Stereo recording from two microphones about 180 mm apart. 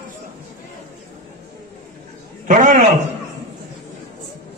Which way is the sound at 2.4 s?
45° right (ahead or behind).